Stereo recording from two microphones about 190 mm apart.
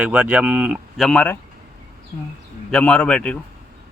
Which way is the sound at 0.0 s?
10° right (ahead or behind).